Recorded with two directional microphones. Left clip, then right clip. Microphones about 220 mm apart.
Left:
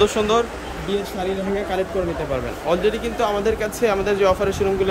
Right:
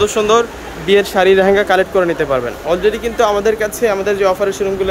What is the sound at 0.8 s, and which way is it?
Speech, 10° right (ahead or behind).